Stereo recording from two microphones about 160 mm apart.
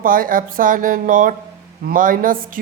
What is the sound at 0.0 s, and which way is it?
Speech, 60° right (ahead or behind).